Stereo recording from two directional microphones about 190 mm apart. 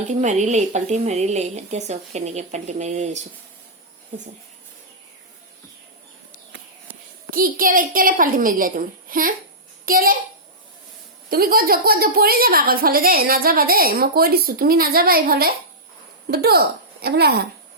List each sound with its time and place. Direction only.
0.1 s speech: 40° right (ahead or behind)
7.3 s a woman's voice: 50° right (ahead or behind)
11.3 s a woman's voice: 50° right (ahead or behind)